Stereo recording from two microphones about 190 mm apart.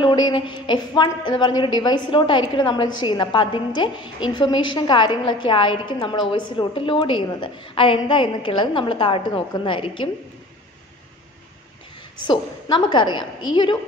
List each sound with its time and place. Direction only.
0.0 s a woman's voice: 25° left (ahead or behind)
12.3 s a woman's voice: 25° left (ahead or behind)